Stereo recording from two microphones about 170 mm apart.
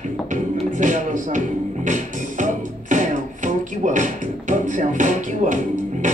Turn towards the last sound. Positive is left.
turn(degrees=-45)  # may be behind; listen again after turning